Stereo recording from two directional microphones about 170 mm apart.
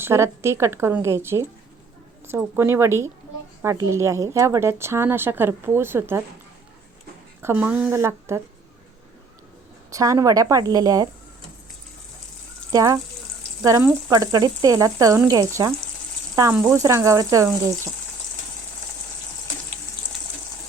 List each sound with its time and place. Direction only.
0.0 s speech: 15° right (ahead or behind)
7.4 s speech: 10° right (ahead or behind)
9.9 s frying: 20° right (ahead or behind)
12.7 s frying: 20° right (ahead or behind)
16.3 s speech: 20° right (ahead or behind)